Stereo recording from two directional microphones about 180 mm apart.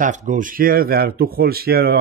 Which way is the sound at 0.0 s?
45° right (ahead or behind).